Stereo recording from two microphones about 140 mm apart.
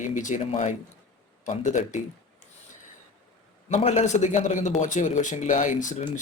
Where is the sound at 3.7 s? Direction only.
50° left (ahead or behind).